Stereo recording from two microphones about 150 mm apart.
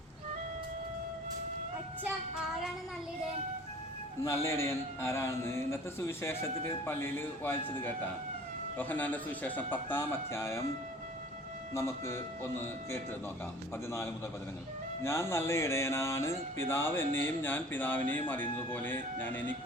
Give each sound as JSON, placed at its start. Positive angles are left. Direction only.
{"t": 4.4, "sound": "music", "side_deg": 20}
{"t": 11.7, "sound": "music", "side_deg": 20}
{"t": 15.0, "sound": "music", "side_deg": 15}